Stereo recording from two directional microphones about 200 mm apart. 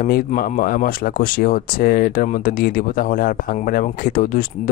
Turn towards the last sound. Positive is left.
turn(degrees=45)  # may be behind; listen again after turning